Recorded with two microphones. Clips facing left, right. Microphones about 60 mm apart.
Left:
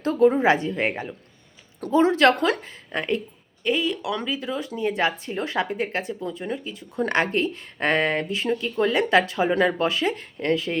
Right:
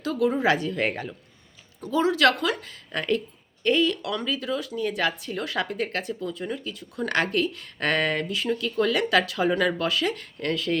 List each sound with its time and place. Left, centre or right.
0.0 s speech: left
1.9 s speech: left